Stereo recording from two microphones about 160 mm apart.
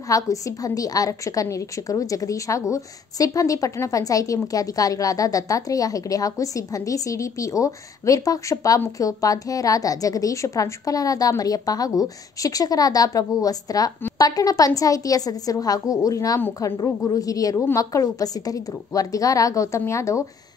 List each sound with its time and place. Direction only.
0.1 s a woman's voice: 20° left (ahead or behind)